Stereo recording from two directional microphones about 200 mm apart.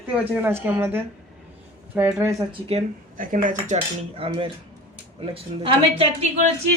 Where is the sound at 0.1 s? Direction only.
10° right (ahead or behind).